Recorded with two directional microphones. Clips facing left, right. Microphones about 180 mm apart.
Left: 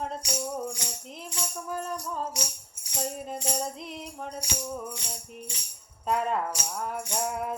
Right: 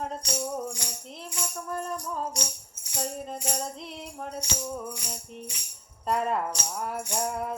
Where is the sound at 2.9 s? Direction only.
25° left (ahead or behind).